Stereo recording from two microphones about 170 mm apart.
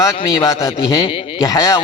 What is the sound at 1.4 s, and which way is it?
Speech, 20° left (ahead or behind).